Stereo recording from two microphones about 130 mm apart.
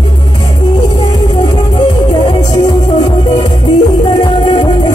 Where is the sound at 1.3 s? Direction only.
35° left (ahead or behind).